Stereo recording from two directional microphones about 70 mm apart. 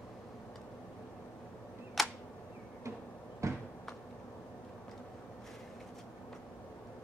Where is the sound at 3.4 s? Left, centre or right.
Right.